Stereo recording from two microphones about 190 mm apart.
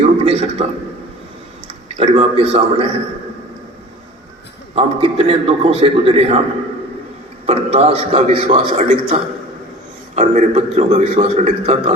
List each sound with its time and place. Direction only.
0.3 s a sound: 35° right (ahead or behind)
2.0 s a man's voice: 30° right (ahead or behind)
4.7 s a man's voice: 35° right (ahead or behind)
7.4 s a man's voice: 30° right (ahead or behind)